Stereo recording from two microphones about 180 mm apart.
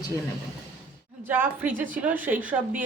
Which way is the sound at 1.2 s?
10° right (ahead or behind).